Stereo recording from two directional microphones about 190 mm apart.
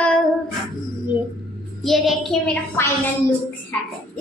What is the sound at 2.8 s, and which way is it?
Speech, 10° left (ahead or behind).